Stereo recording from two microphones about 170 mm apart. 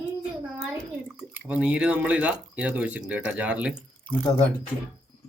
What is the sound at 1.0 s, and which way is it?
Speech, 10° right (ahead or behind).